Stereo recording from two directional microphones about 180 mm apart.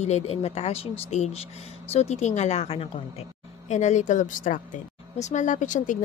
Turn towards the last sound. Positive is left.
turn(degrees=45)  # may be behind; listen again after turning